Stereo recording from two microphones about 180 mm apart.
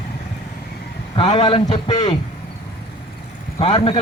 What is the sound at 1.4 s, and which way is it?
Speech, 25° left (ahead or behind).